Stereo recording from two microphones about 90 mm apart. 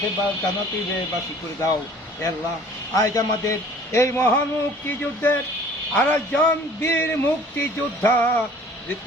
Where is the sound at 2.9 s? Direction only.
40° left (ahead or behind).